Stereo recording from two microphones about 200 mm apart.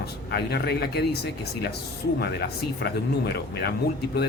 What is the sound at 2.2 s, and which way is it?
Speech, 55° left (ahead or behind).